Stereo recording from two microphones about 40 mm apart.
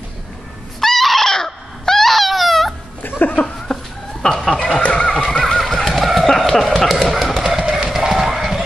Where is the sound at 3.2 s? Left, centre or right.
Left.